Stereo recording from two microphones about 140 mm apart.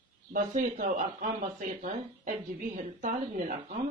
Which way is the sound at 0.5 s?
75° right (ahead or behind).